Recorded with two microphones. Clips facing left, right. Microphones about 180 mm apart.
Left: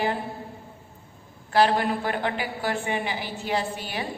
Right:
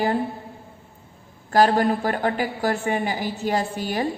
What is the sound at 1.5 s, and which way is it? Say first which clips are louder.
A woman's voice: right 3 dB; 45° right (ahead or behind).